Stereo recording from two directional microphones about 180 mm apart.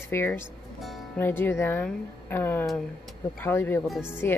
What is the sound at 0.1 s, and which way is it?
Speech, 10° left (ahead or behind).